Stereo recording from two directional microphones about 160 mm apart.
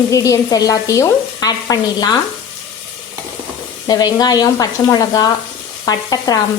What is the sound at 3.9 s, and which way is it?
Speech, 25° left (ahead or behind).